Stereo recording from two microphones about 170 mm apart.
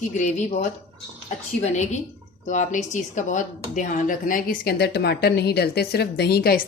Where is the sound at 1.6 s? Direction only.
45° left (ahead or behind).